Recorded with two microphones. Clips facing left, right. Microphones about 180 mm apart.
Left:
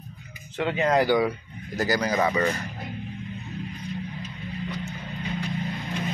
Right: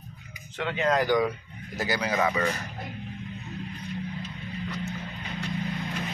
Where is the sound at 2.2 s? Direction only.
10° left (ahead or behind).